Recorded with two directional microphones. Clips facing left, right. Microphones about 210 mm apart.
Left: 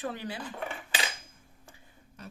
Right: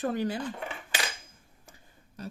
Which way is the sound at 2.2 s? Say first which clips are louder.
Right 6 dB; 35° right (ahead or behind).